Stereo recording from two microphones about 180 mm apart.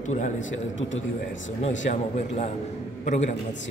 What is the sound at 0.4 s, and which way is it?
Speech, 90° left.